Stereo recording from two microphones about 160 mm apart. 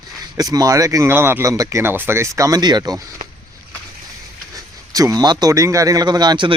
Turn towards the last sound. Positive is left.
turn(degrees=-30)  # may be behind; listen again after turning